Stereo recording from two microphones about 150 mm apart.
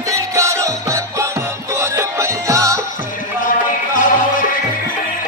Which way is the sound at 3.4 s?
60° left (ahead or behind).